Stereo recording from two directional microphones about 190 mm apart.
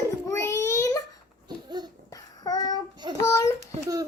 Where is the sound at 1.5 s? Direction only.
20° right (ahead or behind).